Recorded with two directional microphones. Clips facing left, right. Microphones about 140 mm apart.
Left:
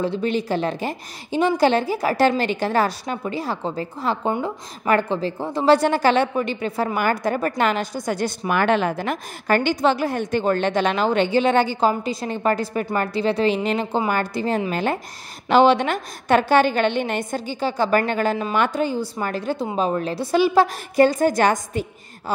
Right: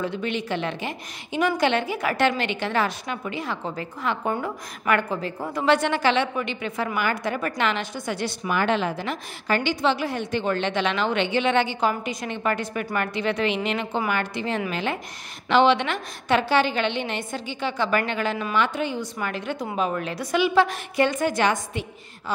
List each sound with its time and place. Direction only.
0.0 s a woman's voice: 35° left (ahead or behind)